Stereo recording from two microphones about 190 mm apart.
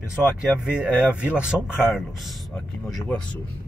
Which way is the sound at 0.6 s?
5° right (ahead or behind).